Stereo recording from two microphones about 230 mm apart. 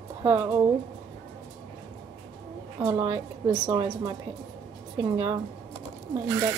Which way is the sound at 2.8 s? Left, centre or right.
Centre.